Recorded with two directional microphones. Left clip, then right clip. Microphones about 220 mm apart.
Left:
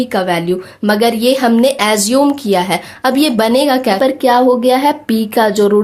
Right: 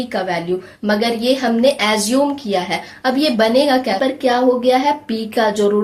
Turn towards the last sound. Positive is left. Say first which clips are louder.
# left 4 dB
turn(degrees=45)  # may be behind; listen again after turning